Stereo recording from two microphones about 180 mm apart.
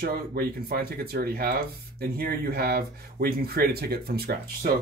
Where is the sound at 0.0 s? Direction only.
55° right (ahead or behind).